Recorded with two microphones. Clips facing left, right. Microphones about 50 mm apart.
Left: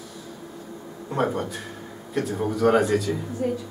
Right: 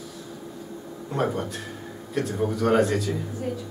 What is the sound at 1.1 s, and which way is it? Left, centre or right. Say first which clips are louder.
Speech: left 1 dB; centre.